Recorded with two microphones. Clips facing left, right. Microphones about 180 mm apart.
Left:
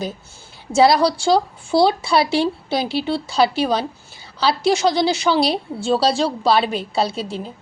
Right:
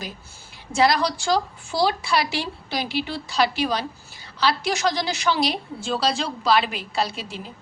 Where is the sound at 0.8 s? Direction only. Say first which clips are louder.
Left 6 dB; 30° left (ahead or behind).